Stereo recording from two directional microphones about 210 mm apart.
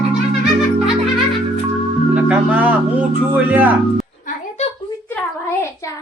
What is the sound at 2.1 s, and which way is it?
Speech, 5° right (ahead or behind).